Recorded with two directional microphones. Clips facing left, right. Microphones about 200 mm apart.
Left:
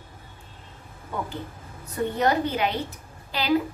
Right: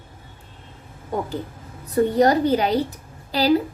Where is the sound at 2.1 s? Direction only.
35° right (ahead or behind).